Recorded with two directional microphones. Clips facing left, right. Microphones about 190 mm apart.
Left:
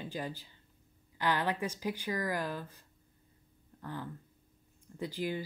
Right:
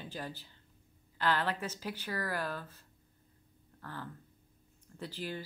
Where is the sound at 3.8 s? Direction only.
15° left (ahead or behind).